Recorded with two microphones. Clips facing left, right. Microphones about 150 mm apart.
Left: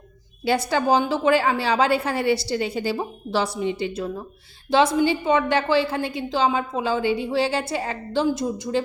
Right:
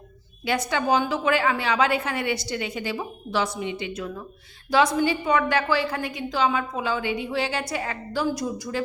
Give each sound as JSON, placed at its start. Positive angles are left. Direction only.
{"t": 0.4, "sound": "a woman's voice", "side_deg": 30}